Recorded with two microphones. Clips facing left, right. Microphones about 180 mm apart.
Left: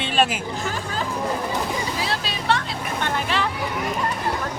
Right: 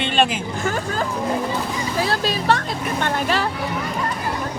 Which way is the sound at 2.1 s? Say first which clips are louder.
Right 4 dB; 45° right (ahead or behind).